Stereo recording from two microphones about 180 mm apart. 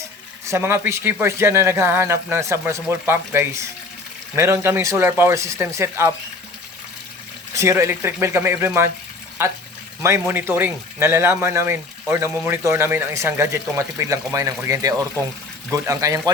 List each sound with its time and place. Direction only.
0.0 s speech: 15° right (ahead or behind)
7.5 s speech: 15° right (ahead or behind)